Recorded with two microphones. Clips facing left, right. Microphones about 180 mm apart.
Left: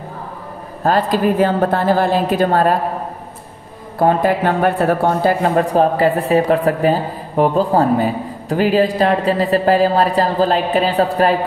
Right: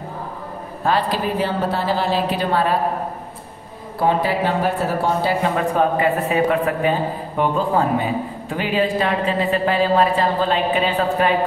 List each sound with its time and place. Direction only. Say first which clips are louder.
0.8 s a woman's voice: left 5 dB; 45° left (ahead or behind)
4.0 s a woman's voice: left 4 dB; 50° left (ahead or behind)
5.7 s speech: left 4 dB; 35° left (ahead or behind)